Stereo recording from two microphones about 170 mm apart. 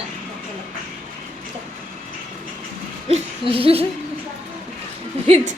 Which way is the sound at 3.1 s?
35° right (ahead or behind).